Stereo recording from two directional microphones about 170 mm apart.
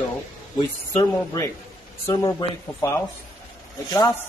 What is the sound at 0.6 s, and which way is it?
A man's voice, 25° left (ahead or behind).